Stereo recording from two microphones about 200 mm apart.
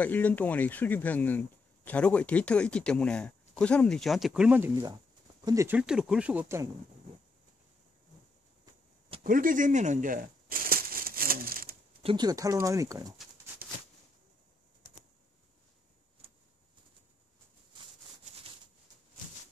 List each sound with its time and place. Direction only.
0.0 s speech: 10° left (ahead or behind); by 6.7 s 10° right (ahead or behind)
9.2 s a sound: 45° right (ahead or behind)
12.0 s speech: 25° right (ahead or behind)